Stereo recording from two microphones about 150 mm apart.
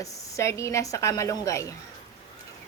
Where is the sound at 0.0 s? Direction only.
20° left (ahead or behind).